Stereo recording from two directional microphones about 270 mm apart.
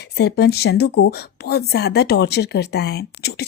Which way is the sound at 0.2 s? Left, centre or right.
Left.